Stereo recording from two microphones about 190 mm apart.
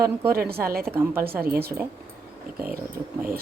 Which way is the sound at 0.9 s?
10° right (ahead or behind).